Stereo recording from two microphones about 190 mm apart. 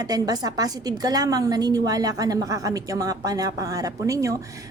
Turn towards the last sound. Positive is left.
turn(degrees=-15)  # may be behind; listen again after turning